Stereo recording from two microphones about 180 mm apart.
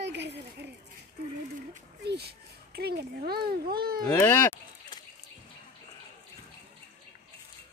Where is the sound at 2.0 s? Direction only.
60° right (ahead or behind).